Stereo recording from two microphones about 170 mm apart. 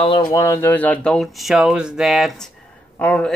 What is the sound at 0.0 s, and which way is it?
Speech, 25° left (ahead or behind).